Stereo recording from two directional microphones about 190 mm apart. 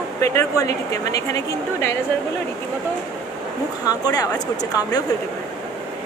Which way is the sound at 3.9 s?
20° left (ahead or behind).